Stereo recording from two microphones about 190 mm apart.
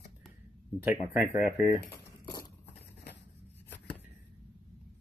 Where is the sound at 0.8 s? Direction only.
10° right (ahead or behind).